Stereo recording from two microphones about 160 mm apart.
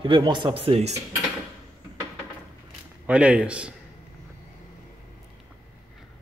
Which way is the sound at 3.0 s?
5° right (ahead or behind).